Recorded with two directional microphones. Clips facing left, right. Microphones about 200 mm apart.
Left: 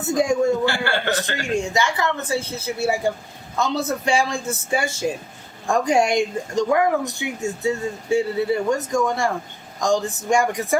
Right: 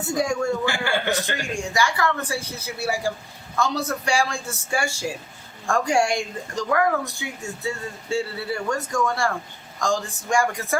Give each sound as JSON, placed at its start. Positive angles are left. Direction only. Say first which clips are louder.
{"t": 0.1, "sound": "a woman's voice", "louder": "left 5 dB", "side_deg": 20}
{"t": 0.6, "sound": "a man's voice", "louder": "left 2 dB", "side_deg": -15}
{"t": 1.5, "sound": "a woman's voice", "louder": "left 3 dB", "side_deg": 20}